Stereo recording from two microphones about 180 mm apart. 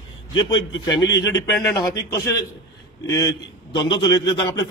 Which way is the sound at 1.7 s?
25° left (ahead or behind).